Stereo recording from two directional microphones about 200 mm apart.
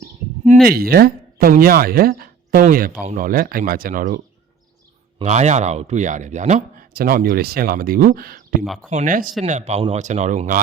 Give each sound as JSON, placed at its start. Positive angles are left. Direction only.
{"t": 0.6, "sound": "speech", "side_deg": -50}
{"t": 5.2, "sound": "speech", "side_deg": -35}
{"t": 6.9, "sound": "speech", "side_deg": -45}
{"t": 8.6, "sound": "speech", "side_deg": 0}
{"t": 8.9, "sound": "speech", "side_deg": -40}